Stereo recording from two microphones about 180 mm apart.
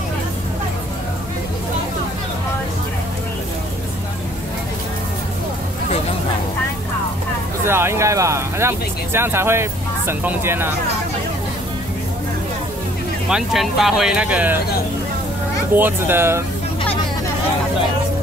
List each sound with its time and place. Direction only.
7.6 s speech: 15° right (ahead or behind)
13.3 s speech: centre (ahead or behind)
15.7 s speech: 10° right (ahead or behind)